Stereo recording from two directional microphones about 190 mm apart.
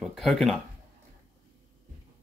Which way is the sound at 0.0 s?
Centre (ahead or behind).